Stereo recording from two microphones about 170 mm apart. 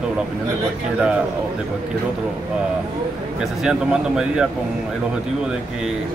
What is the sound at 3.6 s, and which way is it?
Speech, 5° right (ahead or behind).